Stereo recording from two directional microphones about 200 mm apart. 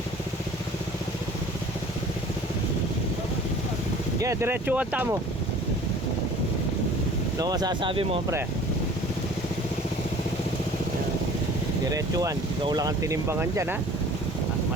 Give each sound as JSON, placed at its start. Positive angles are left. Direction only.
{"t": 4.2, "sound": "speech", "side_deg": -15}
{"t": 7.3, "sound": "speech", "side_deg": -20}
{"t": 11.9, "sound": "speech", "side_deg": -15}